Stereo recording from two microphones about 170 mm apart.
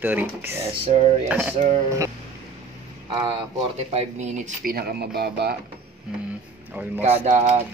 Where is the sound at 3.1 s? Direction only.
25° right (ahead or behind).